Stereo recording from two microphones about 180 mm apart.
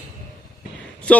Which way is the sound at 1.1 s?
5° left (ahead or behind).